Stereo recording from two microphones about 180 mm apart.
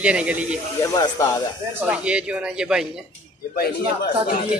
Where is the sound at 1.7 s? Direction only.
5° right (ahead or behind).